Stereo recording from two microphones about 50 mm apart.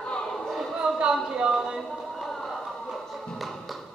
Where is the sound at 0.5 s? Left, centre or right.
Centre.